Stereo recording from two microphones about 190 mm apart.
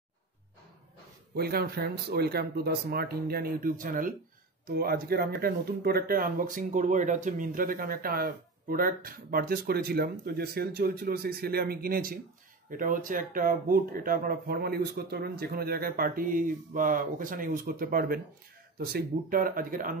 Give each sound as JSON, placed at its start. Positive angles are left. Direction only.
{"t": 1.3, "sound": "speech", "side_deg": -55}